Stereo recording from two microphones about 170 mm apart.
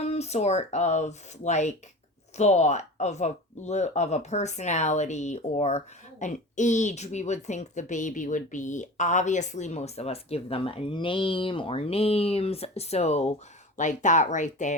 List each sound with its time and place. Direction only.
0.0 s speech: 40° left (ahead or behind)